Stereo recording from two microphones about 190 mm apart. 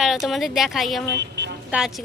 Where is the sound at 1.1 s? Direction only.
65° right (ahead or behind).